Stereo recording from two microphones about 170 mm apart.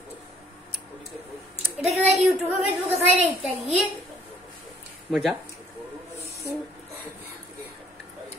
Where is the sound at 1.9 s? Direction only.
40° right (ahead or behind).